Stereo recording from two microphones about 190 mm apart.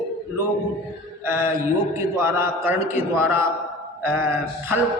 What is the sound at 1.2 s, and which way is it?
A man's voice, 15° right (ahead or behind).